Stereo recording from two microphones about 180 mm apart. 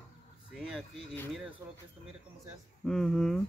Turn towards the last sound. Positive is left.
turn(degrees=0)  # may be behind; listen again after turning